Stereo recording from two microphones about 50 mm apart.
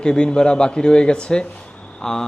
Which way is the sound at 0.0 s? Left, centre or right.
Centre.